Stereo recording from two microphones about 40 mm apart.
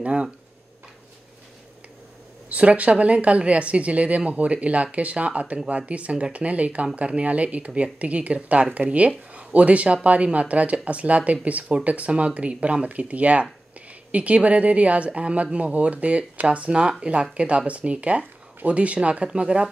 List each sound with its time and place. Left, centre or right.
0.0 s speech: right
2.5 s a woman's voice: right